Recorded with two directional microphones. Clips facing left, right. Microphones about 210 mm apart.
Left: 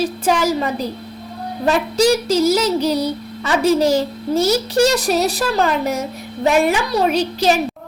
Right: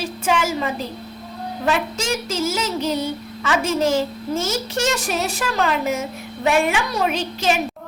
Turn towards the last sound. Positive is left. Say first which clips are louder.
# left 5 dB
turn(degrees=35)  # may be behind; listen again after turning